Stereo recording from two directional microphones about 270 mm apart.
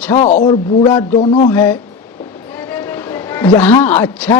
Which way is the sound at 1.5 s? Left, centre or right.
Centre.